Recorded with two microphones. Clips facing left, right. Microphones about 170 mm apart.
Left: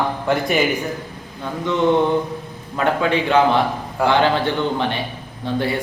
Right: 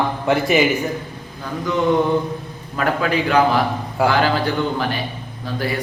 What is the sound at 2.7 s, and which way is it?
A man's voice, 25° left (ahead or behind).